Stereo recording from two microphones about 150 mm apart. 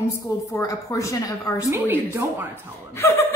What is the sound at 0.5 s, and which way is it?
A woman's voice, 20° left (ahead or behind).